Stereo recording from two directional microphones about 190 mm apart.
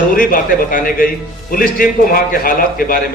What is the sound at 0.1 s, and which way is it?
A man's voice, 45° left (ahead or behind).